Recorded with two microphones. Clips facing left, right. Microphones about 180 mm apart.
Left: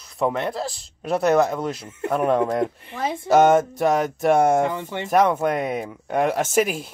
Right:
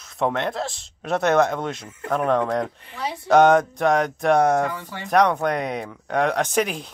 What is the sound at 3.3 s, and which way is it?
Speech, 5° left (ahead or behind).